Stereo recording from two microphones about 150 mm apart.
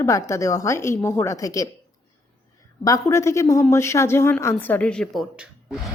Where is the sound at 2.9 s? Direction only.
20° left (ahead or behind); by 5.8 s 5° right (ahead or behind).